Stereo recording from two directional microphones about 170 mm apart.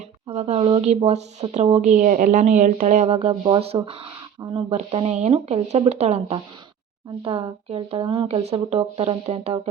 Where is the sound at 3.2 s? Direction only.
30° right (ahead or behind).